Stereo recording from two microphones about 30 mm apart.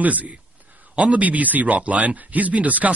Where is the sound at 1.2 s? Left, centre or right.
Right.